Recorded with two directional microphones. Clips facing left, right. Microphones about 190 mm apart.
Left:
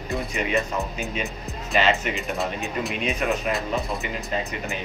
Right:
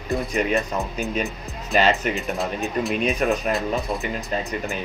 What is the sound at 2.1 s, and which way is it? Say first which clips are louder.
Speech: right 2 dB; centre (ahead or behind).